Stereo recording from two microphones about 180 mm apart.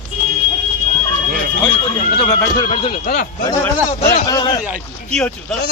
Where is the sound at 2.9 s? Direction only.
50° left (ahead or behind).